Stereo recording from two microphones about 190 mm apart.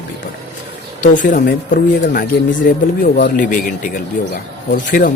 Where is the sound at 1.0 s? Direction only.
45° left (ahead or behind).